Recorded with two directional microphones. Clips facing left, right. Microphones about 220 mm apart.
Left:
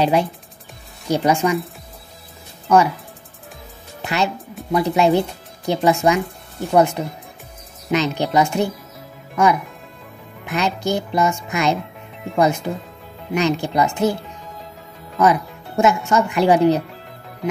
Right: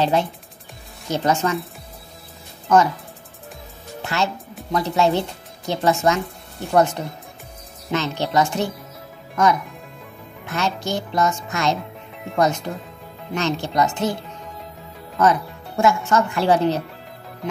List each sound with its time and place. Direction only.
0.0 s a child's voice: 10° left (ahead or behind)
2.7 s a child's voice: 10° left (ahead or behind)
4.0 s music: 15° left (ahead or behind)
4.7 s a child's voice: 15° left (ahead or behind)
10.4 s a child's voice: 15° left (ahead or behind)
15.1 s a child's voice: 10° left (ahead or behind)